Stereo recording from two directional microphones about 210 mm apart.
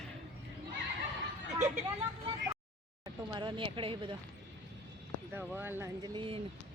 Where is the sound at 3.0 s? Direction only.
20° right (ahead or behind).